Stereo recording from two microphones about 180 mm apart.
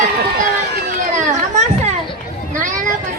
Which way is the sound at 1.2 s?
40° right (ahead or behind).